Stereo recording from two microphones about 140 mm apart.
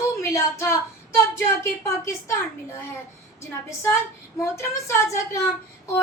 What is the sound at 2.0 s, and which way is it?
Speech, 20° left (ahead or behind).